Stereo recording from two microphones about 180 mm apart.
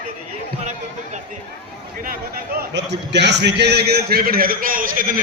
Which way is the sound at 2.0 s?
65° right (ahead or behind).